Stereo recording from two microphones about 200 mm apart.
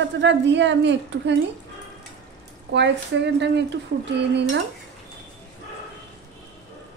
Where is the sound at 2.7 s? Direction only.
60° right (ahead or behind).